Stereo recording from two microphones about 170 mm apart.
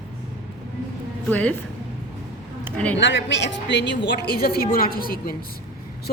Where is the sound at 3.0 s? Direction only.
90° left.